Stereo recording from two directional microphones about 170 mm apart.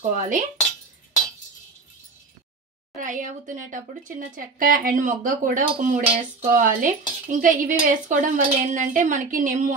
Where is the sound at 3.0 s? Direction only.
50° right (ahead or behind).